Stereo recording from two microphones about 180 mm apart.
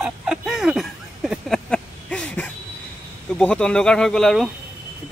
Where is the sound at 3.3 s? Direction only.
5° left (ahead or behind).